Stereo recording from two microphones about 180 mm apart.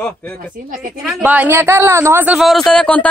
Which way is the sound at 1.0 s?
5° right (ahead or behind).